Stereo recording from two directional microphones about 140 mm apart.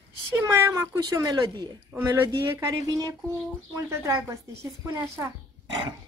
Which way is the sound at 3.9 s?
20° right (ahead or behind).